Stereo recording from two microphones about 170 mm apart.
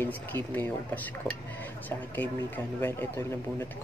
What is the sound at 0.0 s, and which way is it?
Speech, 10° left (ahead or behind).